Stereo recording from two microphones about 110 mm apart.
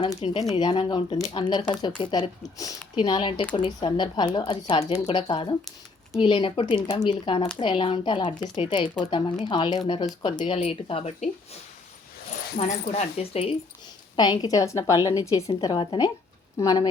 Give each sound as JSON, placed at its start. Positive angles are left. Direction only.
{"t": 0.2, "sound": "speech", "side_deg": 60}
{"t": 0.6, "sound": "a woman's voice", "side_deg": 40}
{"t": 2.4, "sound": "a woman's voice", "side_deg": 30}
{"t": 3.0, "sound": "speech", "side_deg": 45}
{"t": 12.5, "sound": "speech", "side_deg": 70}
{"t": 14.2, "sound": "a woman's voice", "side_deg": 35}
{"t": 15.8, "sound": "a woman's voice", "side_deg": 45}